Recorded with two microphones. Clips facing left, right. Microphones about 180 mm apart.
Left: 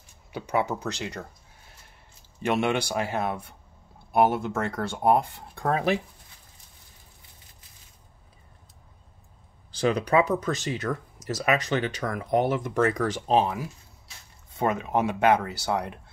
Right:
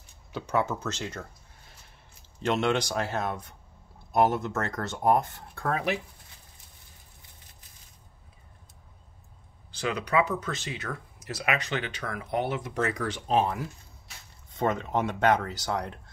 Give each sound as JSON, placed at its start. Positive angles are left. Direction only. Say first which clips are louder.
{"t": 0.3, "sound": "speech", "louder": "left 1 dB", "side_deg": 15}
{"t": 2.4, "sound": "speech", "louder": "left 1 dB", "side_deg": 10}
{"t": 5.7, "sound": "speech", "louder": "left 4 dB", "side_deg": 30}
{"t": 9.8, "sound": "speech", "louder": "left 4 dB", "side_deg": 35}
{"t": 14.6, "sound": "speech", "louder": "left 2 dB", "side_deg": 10}